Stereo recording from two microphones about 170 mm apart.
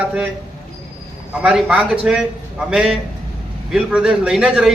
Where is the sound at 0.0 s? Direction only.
5° right (ahead or behind).